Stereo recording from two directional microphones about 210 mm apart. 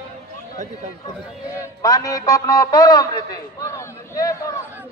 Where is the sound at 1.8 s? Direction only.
15° left (ahead or behind).